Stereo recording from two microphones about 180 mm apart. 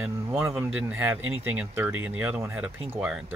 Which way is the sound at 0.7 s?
5° right (ahead or behind).